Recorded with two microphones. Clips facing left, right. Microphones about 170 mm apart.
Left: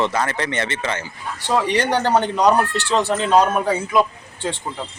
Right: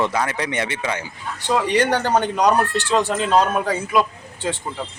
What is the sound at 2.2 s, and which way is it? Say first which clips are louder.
Speech: left 1 dB; 15° right (ahead or behind).